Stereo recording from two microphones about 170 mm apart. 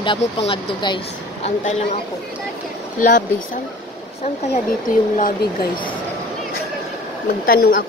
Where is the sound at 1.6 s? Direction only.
40° left (ahead or behind).